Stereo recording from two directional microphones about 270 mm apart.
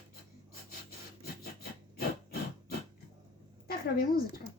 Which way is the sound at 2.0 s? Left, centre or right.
Left.